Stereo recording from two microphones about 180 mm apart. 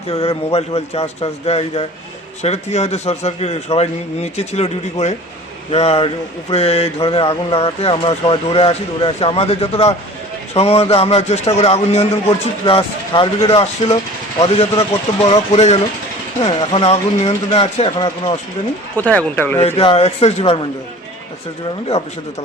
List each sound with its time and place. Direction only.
0.1 s speech: 35° left (ahead or behind)
18.9 s speech: 10° left (ahead or behind)
19.6 s speech: 30° left (ahead or behind)